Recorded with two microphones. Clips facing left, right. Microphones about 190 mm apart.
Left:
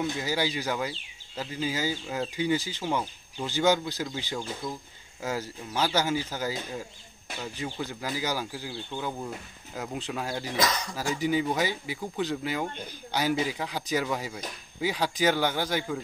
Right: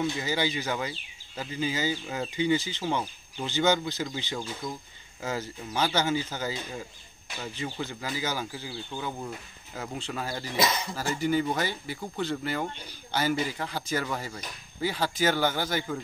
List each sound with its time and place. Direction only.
0.0 s speech: 10° left (ahead or behind)
2.8 s speech: 5° right (ahead or behind)
3.4 s speech: 10° left (ahead or behind)
7.8 s speech: 10° left (ahead or behind)
10.6 s speech: 25° right (ahead or behind)
10.9 s speech: centre (ahead or behind)
15.6 s speech: 10° left (ahead or behind)